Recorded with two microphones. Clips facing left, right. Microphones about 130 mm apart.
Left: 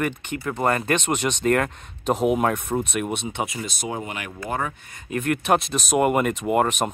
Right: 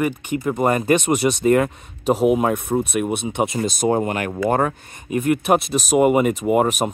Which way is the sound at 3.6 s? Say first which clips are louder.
Right 11 dB; 40° right (ahead or behind).